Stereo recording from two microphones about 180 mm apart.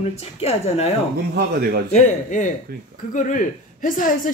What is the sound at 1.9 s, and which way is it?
A woman's voice, 40° left (ahead or behind).